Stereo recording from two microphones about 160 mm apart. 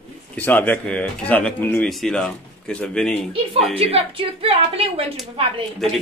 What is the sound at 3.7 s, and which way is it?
A woman's voice, 35° right (ahead or behind).